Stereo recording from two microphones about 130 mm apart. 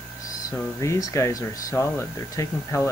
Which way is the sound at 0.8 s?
25° left (ahead or behind).